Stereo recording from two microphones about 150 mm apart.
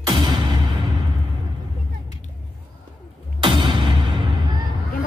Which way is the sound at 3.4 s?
35° right (ahead or behind).